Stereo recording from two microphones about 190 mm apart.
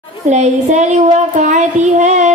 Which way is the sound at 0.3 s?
35° right (ahead or behind).